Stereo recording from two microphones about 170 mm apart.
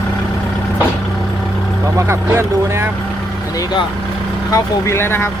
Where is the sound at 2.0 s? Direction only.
15° right (ahead or behind).